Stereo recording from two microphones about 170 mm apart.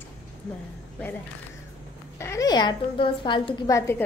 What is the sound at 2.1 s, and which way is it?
A woman's voice, 15° left (ahead or behind).